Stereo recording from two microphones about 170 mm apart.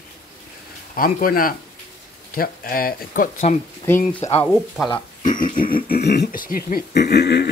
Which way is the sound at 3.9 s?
15° left (ahead or behind).